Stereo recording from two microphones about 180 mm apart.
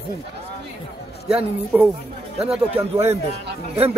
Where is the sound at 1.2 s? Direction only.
5° right (ahead or behind).